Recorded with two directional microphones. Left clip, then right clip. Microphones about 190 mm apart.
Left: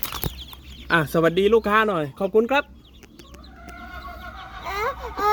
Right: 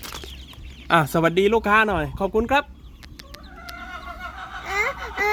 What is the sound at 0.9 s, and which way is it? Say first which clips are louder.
Speech: right 1 dB; 25° right (ahead or behind).